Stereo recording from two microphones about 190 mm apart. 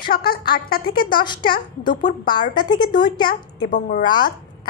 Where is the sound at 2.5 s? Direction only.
25° left (ahead or behind).